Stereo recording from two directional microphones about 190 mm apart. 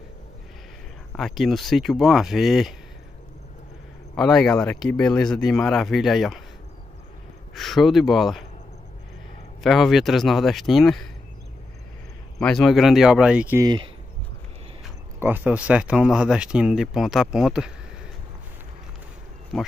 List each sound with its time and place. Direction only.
1.1 s speech: centre (ahead or behind)
4.1 s speech: 5° left (ahead or behind)
7.5 s speech: centre (ahead or behind)
9.6 s speech: centre (ahead or behind)
12.4 s speech: 5° left (ahead or behind)
13.6 s speech: 20° right (ahead or behind)
15.1 s speech: 10° right (ahead or behind)
19.5 s speech: centre (ahead or behind)